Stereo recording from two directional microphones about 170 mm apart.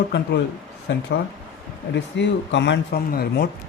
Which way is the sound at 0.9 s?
90° left.